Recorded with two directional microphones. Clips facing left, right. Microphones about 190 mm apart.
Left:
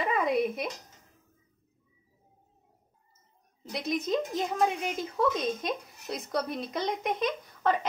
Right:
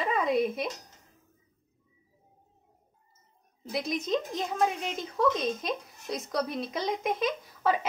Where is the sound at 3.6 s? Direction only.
Centre (ahead or behind).